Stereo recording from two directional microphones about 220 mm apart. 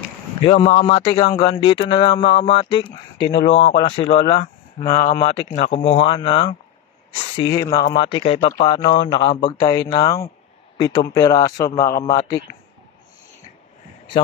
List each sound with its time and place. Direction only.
0.4 s speech: 25° left (ahead or behind)
4.7 s a man's voice: 30° left (ahead or behind); by 12.2 s 15° left (ahead or behind)